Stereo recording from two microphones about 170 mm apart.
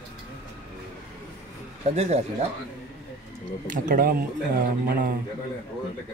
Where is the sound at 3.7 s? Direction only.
55° right (ahead or behind).